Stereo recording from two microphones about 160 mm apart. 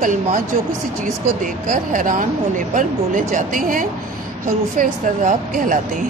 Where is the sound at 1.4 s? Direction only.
55° right (ahead or behind).